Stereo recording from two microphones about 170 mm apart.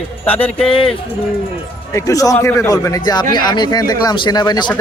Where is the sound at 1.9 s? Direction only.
20° left (ahead or behind).